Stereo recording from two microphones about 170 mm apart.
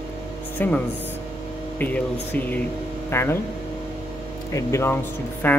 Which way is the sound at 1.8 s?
10° left (ahead or behind).